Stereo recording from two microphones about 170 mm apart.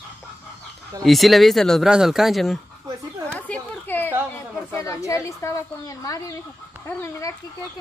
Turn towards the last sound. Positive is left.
turn(degrees=15)  # may be behind; listen again after turning